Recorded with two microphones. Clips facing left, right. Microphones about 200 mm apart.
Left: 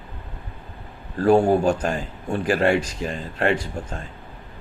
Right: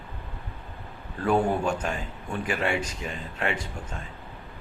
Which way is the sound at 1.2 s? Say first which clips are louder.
Left 7 dB; 35° left (ahead or behind).